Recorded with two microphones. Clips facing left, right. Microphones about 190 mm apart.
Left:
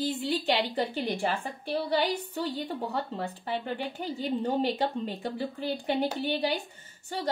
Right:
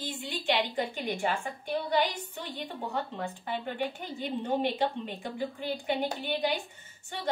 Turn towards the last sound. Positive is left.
turn(degrees=35)  # may be behind; listen again after turning